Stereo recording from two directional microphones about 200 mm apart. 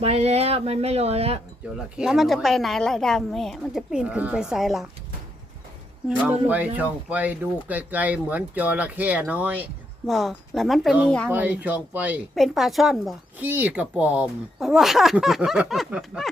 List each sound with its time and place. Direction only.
0.0 s a sound: 30° right (ahead or behind)
2.0 s a woman's voice: centre (ahead or behind)
6.5 s a woman's voice: 10° right (ahead or behind)